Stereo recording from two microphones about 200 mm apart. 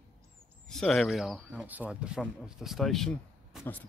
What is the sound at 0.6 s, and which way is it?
Speech, centre (ahead or behind).